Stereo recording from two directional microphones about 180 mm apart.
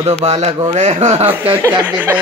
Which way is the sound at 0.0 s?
35° right (ahead or behind).